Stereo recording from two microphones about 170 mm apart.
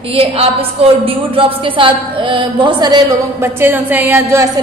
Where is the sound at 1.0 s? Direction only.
30° right (ahead or behind).